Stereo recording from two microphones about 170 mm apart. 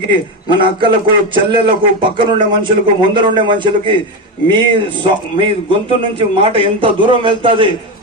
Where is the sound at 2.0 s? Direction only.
30° right (ahead or behind).